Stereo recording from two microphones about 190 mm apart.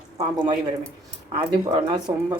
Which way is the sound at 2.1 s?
20° right (ahead or behind).